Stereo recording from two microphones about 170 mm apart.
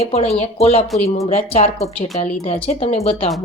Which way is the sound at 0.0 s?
35° left (ahead or behind).